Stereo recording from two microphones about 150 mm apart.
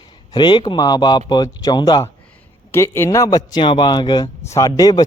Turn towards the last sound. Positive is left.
turn(degrees=25)  # may be behind; listen again after turning